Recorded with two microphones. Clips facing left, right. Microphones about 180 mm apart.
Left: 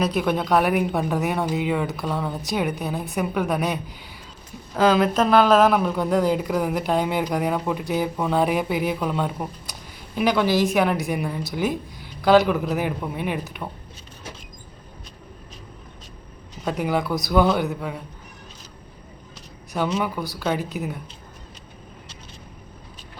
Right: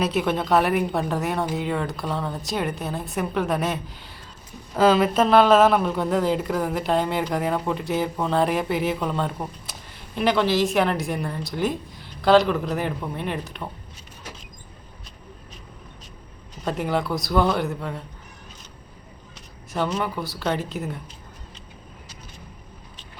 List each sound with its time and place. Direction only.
0.0 s speech: 5° right (ahead or behind)
16.6 s speech: centre (ahead or behind)
19.7 s speech: 5° left (ahead or behind)